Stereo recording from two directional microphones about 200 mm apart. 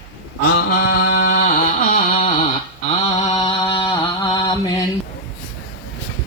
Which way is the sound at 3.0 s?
20° left (ahead or behind).